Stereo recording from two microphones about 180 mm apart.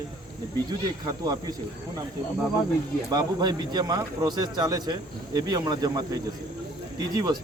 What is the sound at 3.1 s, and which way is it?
A man's voice, 25° right (ahead or behind).